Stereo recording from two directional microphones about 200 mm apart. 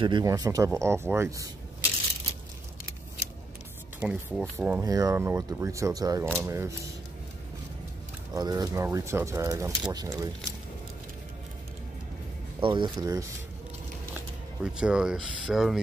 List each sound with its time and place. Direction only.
0.0 s speech: 20° right (ahead or behind)
4.0 s speech: 5° right (ahead or behind)
8.3 s speech: 20° right (ahead or behind)
12.5 s speech: 25° right (ahead or behind)
14.1 s speech: 5° right (ahead or behind)